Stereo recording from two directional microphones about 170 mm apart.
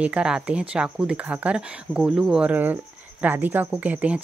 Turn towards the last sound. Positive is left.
turn(degrees=-10)  # may be behind; listen again after turning